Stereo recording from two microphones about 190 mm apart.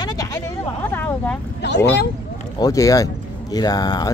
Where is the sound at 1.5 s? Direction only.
65° left (ahead or behind).